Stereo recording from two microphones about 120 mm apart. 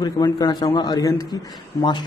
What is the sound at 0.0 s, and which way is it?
A man's voice, 35° left (ahead or behind).